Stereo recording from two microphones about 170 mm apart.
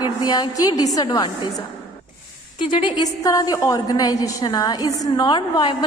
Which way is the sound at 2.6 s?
30° left (ahead or behind).